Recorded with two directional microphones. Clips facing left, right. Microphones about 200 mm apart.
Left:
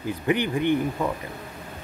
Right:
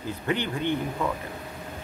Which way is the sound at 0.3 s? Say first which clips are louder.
Left 5 dB; 15° left (ahead or behind).